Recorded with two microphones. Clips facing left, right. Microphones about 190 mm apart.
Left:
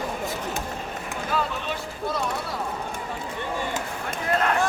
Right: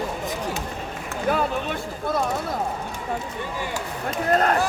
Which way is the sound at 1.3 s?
55° right (ahead or behind).